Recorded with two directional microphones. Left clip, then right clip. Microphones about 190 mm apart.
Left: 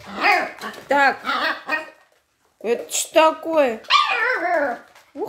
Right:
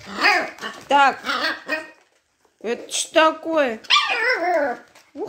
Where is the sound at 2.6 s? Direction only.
Centre (ahead or behind).